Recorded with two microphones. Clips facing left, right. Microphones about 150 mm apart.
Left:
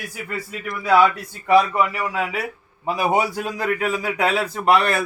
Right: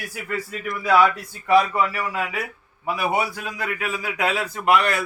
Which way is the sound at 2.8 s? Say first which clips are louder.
Left 3 dB; 35° left (ahead or behind).